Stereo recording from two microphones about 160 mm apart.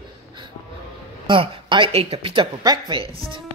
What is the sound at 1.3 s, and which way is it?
Speech, 30° right (ahead or behind).